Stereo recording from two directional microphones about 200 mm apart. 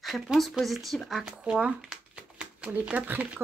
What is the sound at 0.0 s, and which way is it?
Speech, centre (ahead or behind).